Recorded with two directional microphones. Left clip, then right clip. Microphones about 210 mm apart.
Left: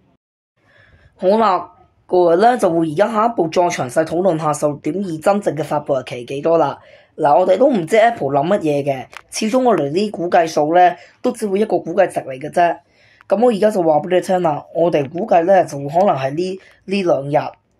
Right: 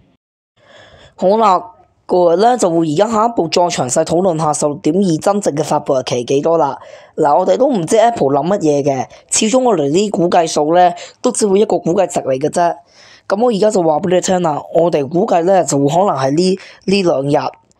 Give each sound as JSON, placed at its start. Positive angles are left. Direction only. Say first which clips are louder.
{"t": 1.1, "sound": "speech", "louder": "right 3 dB", "side_deg": -30}